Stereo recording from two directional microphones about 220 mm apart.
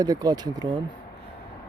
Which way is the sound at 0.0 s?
15° right (ahead or behind).